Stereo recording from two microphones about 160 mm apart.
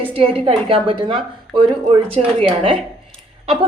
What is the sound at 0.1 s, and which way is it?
A woman's voice, 35° right (ahead or behind).